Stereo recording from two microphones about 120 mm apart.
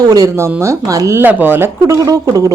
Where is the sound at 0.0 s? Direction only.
30° right (ahead or behind).